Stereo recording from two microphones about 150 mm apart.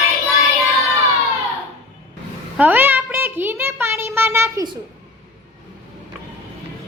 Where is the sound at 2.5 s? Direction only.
10° right (ahead or behind).